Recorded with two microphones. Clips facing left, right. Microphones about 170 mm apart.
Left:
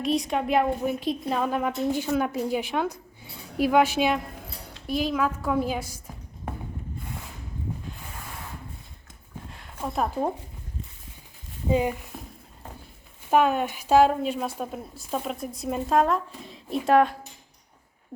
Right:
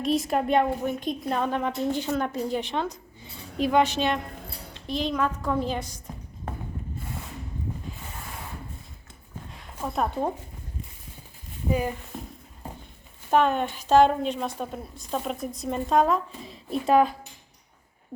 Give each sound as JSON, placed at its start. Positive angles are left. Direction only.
{"t": 0.0, "sound": "a woman's voice", "side_deg": 0}
{"t": 9.5, "sound": "a sound", "side_deg": 0}
{"t": 11.7, "sound": "speech", "side_deg": 20}
{"t": 13.3, "sound": "a woman's voice", "side_deg": 5}